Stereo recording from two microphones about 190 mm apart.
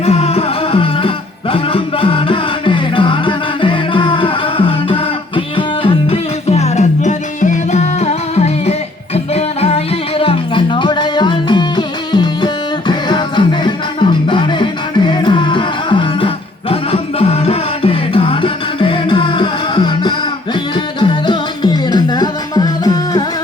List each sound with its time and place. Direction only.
0.0 s music: 35° left (ahead or behind)